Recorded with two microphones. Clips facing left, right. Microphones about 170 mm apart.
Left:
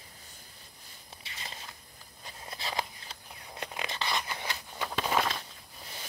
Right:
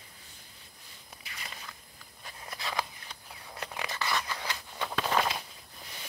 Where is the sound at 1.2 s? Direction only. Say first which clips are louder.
Even; 25° left (ahead or behind).